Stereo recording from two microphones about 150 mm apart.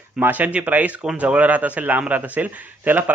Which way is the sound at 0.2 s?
10° right (ahead or behind).